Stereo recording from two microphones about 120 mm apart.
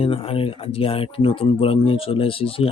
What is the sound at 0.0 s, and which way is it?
Speech, 50° left (ahead or behind).